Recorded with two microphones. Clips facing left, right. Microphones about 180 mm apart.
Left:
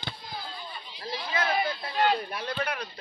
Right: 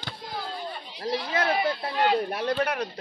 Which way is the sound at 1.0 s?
70° right (ahead or behind).